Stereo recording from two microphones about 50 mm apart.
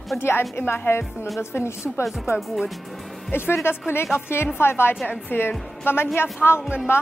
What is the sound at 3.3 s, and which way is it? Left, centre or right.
A woman's voice, left.